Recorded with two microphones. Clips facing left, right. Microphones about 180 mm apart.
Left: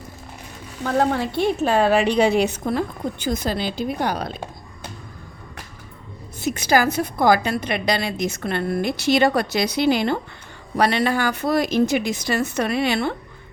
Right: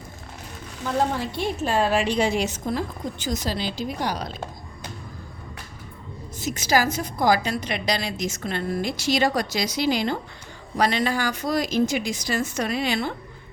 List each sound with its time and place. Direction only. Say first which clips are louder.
0.9 s a woman's voice: left 4 dB; 60° left (ahead or behind)
6.4 s a woman's voice: left 3 dB; 60° left (ahead or behind)